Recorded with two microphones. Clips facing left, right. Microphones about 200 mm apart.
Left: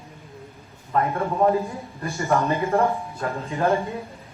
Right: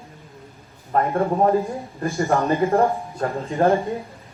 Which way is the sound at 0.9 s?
30° right (ahead or behind).